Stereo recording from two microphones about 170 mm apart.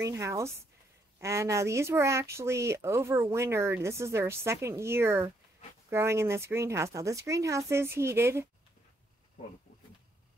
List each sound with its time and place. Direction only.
0.0 s speech: 15° right (ahead or behind)